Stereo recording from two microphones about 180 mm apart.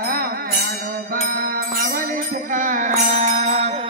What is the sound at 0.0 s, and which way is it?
Music, 55° right (ahead or behind).